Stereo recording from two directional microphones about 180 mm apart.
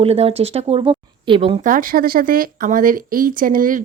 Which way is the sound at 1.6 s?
50° right (ahead or behind).